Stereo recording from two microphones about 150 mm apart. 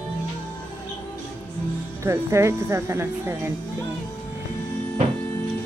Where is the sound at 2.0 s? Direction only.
20° right (ahead or behind).